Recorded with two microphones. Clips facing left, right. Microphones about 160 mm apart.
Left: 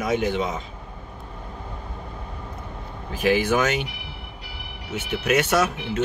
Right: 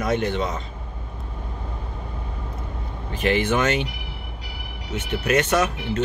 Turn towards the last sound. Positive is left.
turn(degrees=5)  # may be behind; listen again after turning